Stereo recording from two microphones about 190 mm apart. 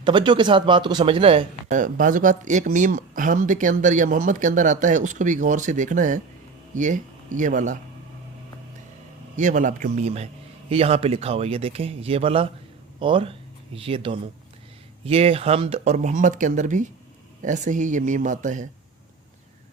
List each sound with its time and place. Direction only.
0.0 s speech: 25° right (ahead or behind)
1.7 s speech: 45° right (ahead or behind)
9.3 s speech: 40° right (ahead or behind)